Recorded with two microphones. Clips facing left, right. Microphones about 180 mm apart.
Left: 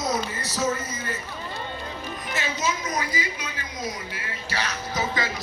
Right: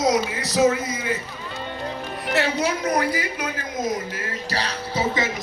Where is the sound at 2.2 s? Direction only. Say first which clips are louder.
Right 7 dB; 65° right (ahead or behind).